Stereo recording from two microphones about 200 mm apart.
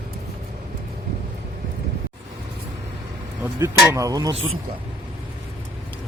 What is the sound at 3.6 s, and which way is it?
Speech, 15° right (ahead or behind).